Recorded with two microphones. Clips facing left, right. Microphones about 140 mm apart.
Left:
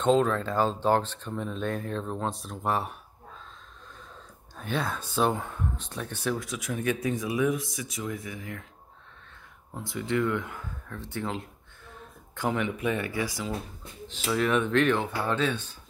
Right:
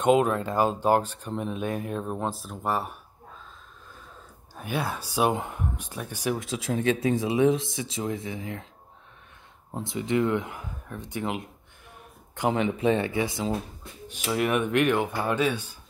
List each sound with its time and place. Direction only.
0.0 s speech: 15° right (ahead or behind)
4.6 s speech: 10° right (ahead or behind)
6.4 s speech: 25° right (ahead or behind)
9.7 s speech: 25° right (ahead or behind)
14.0 s speech: 15° right (ahead or behind)